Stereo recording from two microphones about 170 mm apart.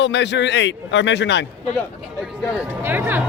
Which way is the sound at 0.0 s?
90° left.